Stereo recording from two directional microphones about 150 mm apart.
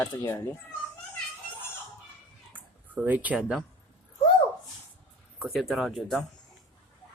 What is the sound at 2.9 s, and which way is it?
Speech, 10° right (ahead or behind).